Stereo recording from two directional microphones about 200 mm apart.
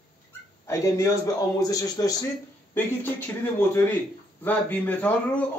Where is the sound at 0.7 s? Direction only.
15° left (ahead or behind).